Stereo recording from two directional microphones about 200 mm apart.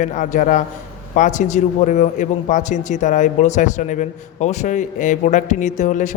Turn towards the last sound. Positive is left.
turn(degrees=40)  # may be behind; listen again after turning